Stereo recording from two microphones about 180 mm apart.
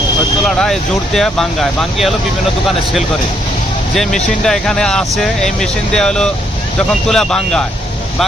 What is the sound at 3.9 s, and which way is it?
Speech, centre (ahead or behind).